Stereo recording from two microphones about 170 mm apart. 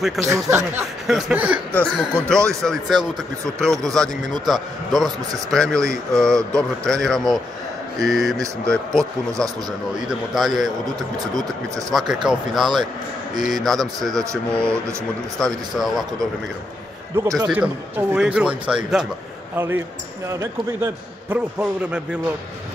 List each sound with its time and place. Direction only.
0.2 s a man's voice: 15° right (ahead or behind)
1.7 s a man's voice: 5° left (ahead or behind)
11.9 s a man's voice: centre (ahead or behind)
17.1 s a man's voice: 20° right (ahead or behind)